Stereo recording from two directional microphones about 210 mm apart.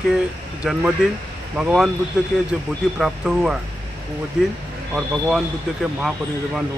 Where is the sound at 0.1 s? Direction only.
5° right (ahead or behind).